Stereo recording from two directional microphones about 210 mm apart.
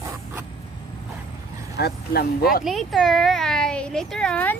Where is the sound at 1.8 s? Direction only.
50° left (ahead or behind).